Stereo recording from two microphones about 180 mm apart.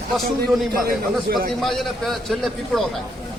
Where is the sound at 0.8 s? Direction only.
55° right (ahead or behind).